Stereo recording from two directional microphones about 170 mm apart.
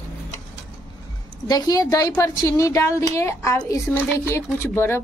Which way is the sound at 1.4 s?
20° left (ahead or behind).